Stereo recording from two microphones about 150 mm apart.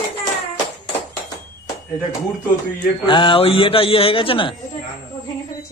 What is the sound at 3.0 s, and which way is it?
Speech, 35° left (ahead or behind).